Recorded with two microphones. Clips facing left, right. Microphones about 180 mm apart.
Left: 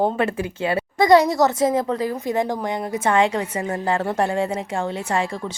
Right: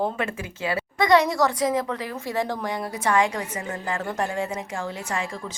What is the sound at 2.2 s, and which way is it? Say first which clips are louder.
A woman's voice: left 1 dB; 20° left (ahead or behind).